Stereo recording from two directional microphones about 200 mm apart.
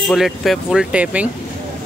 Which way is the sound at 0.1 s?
Centre (ahead or behind).